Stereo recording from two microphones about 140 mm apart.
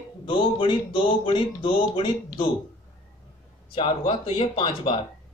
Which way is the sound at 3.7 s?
40° left (ahead or behind).